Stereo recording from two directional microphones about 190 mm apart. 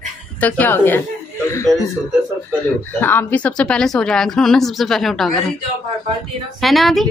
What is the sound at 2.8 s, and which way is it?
A woman's voice, 10° left (ahead or behind).